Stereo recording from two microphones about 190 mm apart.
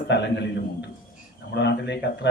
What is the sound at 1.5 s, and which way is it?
Speech, 65° left (ahead or behind).